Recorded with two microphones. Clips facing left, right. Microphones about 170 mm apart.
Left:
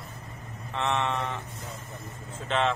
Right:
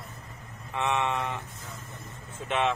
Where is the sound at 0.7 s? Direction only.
10° right (ahead or behind).